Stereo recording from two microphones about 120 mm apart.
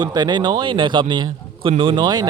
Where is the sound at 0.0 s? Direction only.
35° right (ahead or behind).